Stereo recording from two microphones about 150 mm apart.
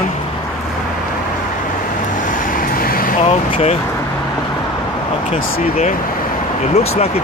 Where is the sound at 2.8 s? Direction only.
75° left (ahead or behind).